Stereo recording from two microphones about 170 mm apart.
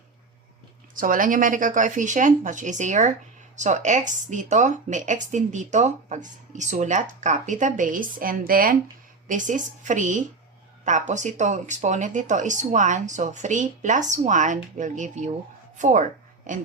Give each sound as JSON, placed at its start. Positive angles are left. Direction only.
{"t": 0.9, "sound": "speech", "side_deg": -55}